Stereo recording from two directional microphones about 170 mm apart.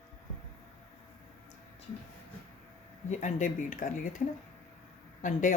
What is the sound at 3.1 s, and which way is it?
Speech, 45° left (ahead or behind).